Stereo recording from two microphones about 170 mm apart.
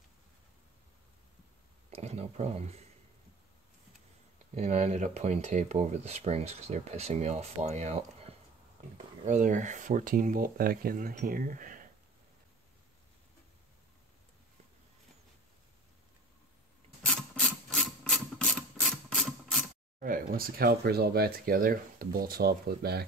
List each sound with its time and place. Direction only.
1.9 s speech: 40° right (ahead or behind)
4.6 s speech: 40° right (ahead or behind)
17.0 s a sound: 5° left (ahead or behind)
20.0 s speech: 55° right (ahead or behind)